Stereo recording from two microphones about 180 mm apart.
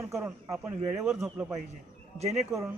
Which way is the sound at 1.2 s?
5° right (ahead or behind).